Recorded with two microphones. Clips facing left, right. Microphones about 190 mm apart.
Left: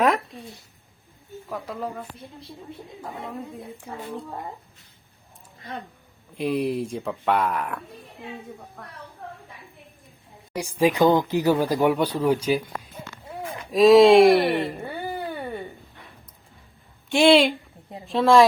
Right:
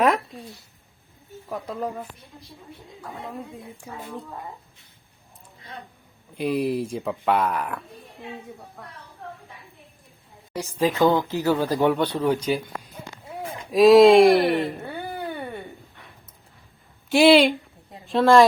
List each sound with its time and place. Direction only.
0.0 s a sound: centre (ahead or behind)
1.5 s speech: 10° right (ahead or behind)
2.7 s speech: 25° left (ahead or behind)
6.3 s speech: centre (ahead or behind)
10.5 s speech: 10° left (ahead or behind)
13.7 s a sound: centre (ahead or behind)
17.1 s a woman's voice: centre (ahead or behind)